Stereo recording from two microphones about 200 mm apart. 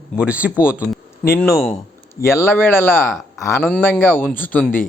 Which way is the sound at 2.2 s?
15° left (ahead or behind).